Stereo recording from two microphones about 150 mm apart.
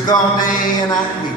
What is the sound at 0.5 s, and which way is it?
Speech, 25° left (ahead or behind).